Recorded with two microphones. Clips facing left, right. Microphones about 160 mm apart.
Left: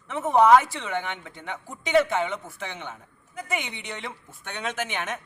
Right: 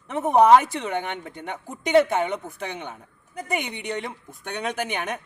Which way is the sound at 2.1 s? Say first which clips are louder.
Right 2 dB; 15° right (ahead or behind).